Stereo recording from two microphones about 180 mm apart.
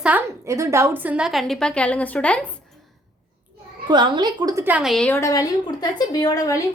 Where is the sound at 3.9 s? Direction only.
25° right (ahead or behind).